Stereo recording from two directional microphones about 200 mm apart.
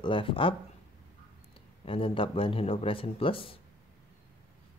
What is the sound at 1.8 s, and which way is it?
Speech, 25° left (ahead or behind).